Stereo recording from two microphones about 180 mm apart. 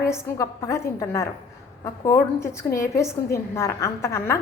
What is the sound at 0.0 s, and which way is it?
A woman's voice, 15° left (ahead or behind).